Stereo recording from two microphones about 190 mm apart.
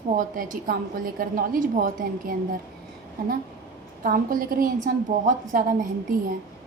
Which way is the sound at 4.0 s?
45° right (ahead or behind).